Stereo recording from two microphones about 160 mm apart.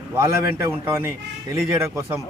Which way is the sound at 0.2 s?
15° right (ahead or behind).